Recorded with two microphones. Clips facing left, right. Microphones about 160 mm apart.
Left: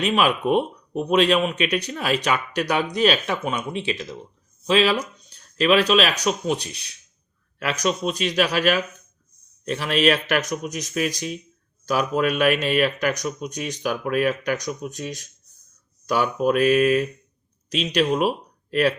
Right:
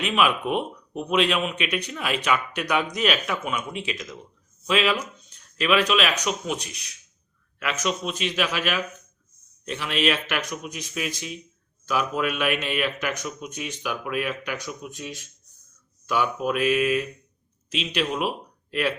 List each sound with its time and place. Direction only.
0.0 s speech: 35° left (ahead or behind)